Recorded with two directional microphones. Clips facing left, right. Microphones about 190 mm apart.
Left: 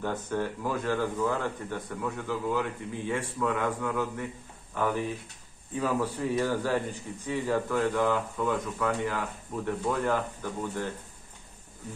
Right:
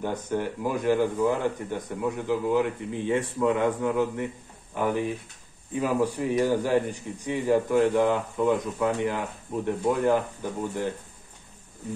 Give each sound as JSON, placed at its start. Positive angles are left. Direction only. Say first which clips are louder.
{"t": 0.0, "sound": "speech", "louder": "right 2 dB", "side_deg": -15}